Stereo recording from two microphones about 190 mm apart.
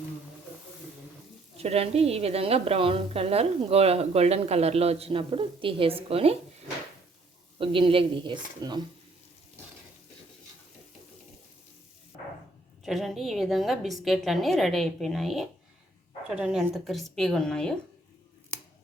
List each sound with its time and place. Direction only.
1.5 s a woman's voice: 35° right (ahead or behind)
7.6 s speech: 30° right (ahead or behind)
12.8 s a woman's voice: centre (ahead or behind)